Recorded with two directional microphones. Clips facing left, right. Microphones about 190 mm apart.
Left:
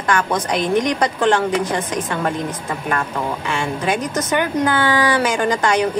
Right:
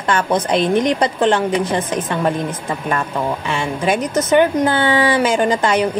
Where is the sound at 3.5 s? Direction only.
20° right (ahead or behind).